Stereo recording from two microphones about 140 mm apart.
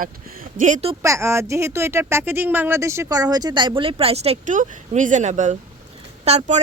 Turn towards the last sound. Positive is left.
turn(degrees=-55)  # may be behind; listen again after turning